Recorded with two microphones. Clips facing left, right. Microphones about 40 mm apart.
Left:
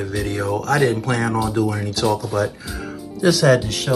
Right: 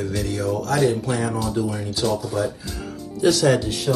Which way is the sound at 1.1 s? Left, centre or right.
Left.